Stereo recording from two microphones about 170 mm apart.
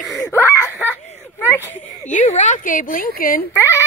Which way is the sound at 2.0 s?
45° left (ahead or behind).